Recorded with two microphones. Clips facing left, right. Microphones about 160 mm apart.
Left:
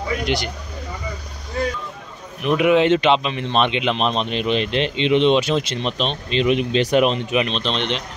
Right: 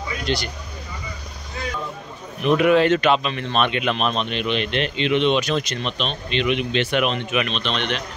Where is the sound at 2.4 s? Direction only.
10° left (ahead or behind).